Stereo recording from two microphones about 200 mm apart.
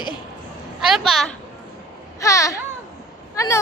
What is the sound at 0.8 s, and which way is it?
Speech, centre (ahead or behind).